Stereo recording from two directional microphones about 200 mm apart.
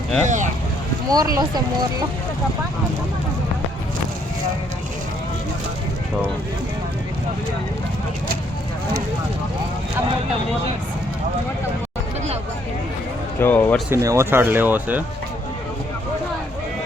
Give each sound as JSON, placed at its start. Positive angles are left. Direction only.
{"t": 0.3, "sound": "speech", "side_deg": -40}
{"t": 1.1, "sound": "speech", "side_deg": -20}
{"t": 13.4, "sound": "speech", "side_deg": 10}
{"t": 13.9, "sound": "speech", "side_deg": -15}